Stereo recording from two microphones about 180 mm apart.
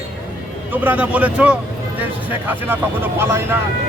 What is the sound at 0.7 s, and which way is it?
Speech, 10° right (ahead or behind).